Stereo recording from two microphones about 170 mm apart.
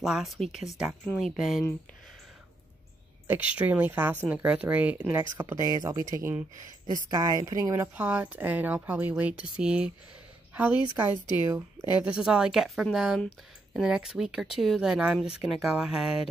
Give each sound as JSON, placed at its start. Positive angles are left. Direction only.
{"t": 0.0, "sound": "speech", "side_deg": 0}
{"t": 3.3, "sound": "speech", "side_deg": -10}
{"t": 5.2, "sound": "speech", "side_deg": -20}
{"t": 7.9, "sound": "a woman's voice", "side_deg": -10}
{"t": 10.8, "sound": "speech", "side_deg": 25}
{"t": 12.0, "sound": "speech", "side_deg": -5}